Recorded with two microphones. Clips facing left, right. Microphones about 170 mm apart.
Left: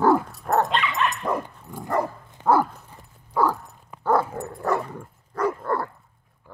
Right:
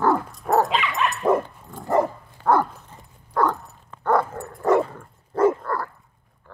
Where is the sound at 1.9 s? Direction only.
20° right (ahead or behind).